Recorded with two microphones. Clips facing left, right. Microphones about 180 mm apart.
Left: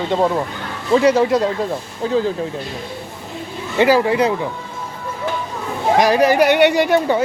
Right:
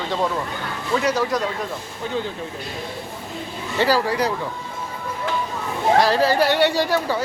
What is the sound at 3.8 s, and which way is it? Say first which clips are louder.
Speech: left 6 dB; 20° left (ahead or behind).